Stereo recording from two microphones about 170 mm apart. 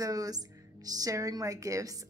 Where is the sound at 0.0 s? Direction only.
20° right (ahead or behind).